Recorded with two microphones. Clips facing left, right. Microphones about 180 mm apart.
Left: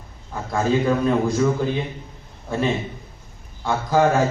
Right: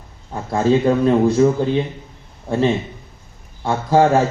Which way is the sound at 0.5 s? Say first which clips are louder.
Right 4 dB; 30° right (ahead or behind).